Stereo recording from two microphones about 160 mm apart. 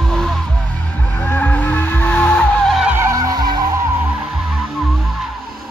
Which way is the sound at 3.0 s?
20° right (ahead or behind).